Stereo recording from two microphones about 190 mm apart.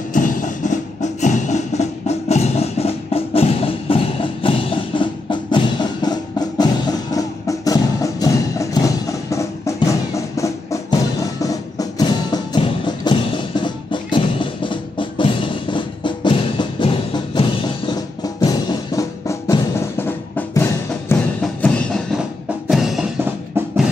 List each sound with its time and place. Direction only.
0.1 s music: 45° left (ahead or behind); by 23.0 s centre (ahead or behind)